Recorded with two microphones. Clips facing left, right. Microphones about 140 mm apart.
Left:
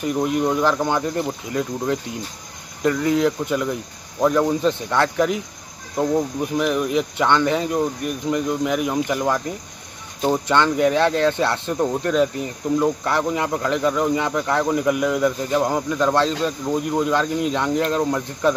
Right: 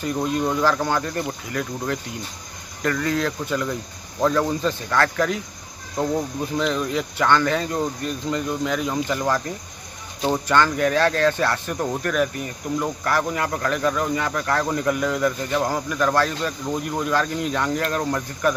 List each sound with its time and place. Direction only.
0.0 s speech: 20° left (ahead or behind)